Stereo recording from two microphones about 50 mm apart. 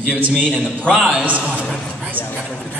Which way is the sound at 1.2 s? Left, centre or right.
Right.